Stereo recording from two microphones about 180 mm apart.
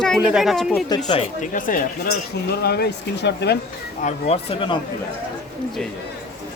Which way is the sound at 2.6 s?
65° left (ahead or behind).